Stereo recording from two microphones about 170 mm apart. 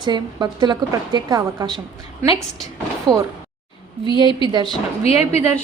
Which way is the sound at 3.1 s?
25° right (ahead or behind).